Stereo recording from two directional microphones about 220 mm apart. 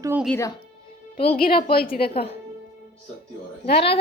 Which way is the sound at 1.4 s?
40° left (ahead or behind).